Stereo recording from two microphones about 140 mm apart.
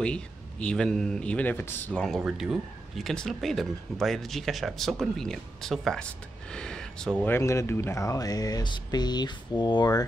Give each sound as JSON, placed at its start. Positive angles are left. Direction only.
{"t": 0.0, "sound": "speech", "side_deg": 5}
{"t": 7.3, "sound": "speech", "side_deg": 20}